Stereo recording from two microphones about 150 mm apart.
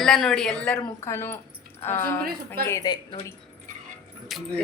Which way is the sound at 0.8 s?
20° left (ahead or behind).